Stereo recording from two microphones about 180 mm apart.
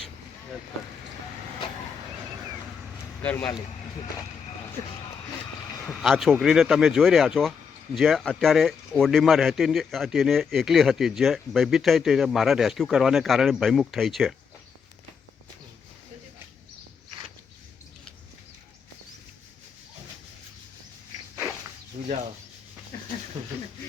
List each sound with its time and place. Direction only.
3.2 s speech: 10° left (ahead or behind)
5.8 s a man's voice: centre (ahead or behind)
22.0 s a sound: 40° right (ahead or behind)